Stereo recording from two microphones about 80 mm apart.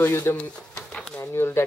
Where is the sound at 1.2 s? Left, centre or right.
Left.